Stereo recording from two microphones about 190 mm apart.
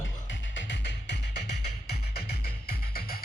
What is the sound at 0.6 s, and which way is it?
Music, 70° left (ahead or behind).